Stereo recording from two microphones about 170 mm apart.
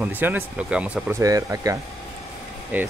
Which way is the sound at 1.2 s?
20° right (ahead or behind).